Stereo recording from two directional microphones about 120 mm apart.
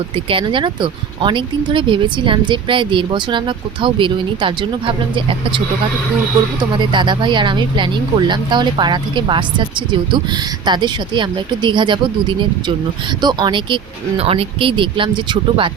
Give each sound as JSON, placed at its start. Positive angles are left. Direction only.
{"t": 0.3, "sound": "speech", "side_deg": -45}
{"t": 10.7, "sound": "speech", "side_deg": -40}
{"t": 13.2, "sound": "speech", "side_deg": -40}
{"t": 14.2, "sound": "speech", "side_deg": -55}